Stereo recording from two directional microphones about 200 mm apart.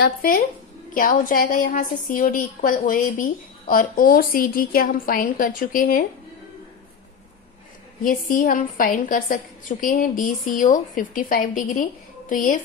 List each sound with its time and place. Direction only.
0.0 s a woman's voice: 45° left (ahead or behind)
8.0 s a woman's voice: 40° left (ahead or behind)